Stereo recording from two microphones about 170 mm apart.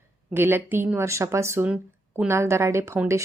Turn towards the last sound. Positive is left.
turn(degrees=-15)  # may be behind; listen again after turning